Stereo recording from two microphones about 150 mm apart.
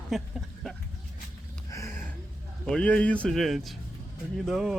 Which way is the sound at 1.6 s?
20° left (ahead or behind).